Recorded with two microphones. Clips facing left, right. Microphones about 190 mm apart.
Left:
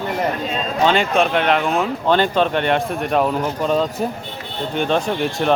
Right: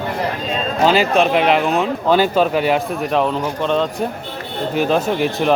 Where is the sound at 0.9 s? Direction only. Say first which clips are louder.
Right 3 dB; centre (ahead or behind).